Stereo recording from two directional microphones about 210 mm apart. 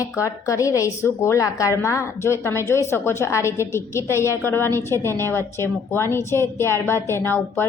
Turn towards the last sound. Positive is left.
turn(degrees=10)  # may be behind; listen again after turning